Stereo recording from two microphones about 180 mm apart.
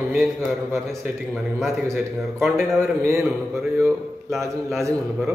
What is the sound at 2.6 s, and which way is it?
Speech, 15° right (ahead or behind).